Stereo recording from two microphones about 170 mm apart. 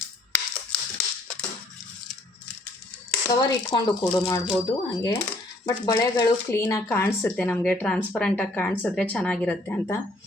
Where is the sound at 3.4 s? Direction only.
25° left (ahead or behind).